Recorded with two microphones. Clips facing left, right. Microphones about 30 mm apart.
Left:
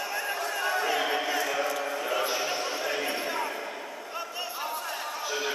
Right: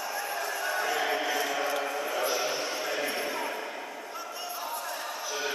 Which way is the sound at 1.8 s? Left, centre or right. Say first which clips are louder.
Left 1 dB; centre.